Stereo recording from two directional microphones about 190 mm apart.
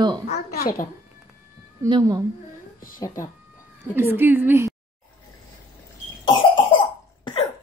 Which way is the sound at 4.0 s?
10° right (ahead or behind).